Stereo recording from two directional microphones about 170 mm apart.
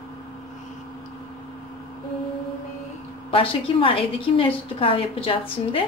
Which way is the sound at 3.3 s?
30° left (ahead or behind).